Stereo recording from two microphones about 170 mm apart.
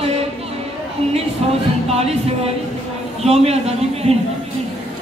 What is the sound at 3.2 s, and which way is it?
Speech, 35° right (ahead or behind).